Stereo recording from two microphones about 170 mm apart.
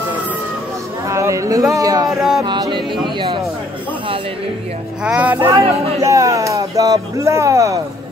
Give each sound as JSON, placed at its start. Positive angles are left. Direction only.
{"t": 1.0, "sound": "speech", "side_deg": -15}
{"t": 1.7, "sound": "a sound", "side_deg": -20}
{"t": 2.0, "sound": "a sound", "side_deg": 0}
{"t": 2.4, "sound": "music", "side_deg": -25}
{"t": 5.0, "sound": "speech", "side_deg": -5}
{"t": 5.6, "sound": "speech", "side_deg": -35}
{"t": 5.9, "sound": "speech", "side_deg": -20}